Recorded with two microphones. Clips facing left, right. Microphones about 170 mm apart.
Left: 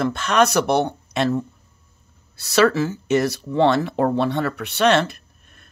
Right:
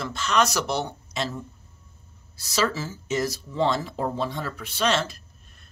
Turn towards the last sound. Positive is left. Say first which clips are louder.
# left 1 dB
turn(degrees=60)  # may be behind; listen again after turning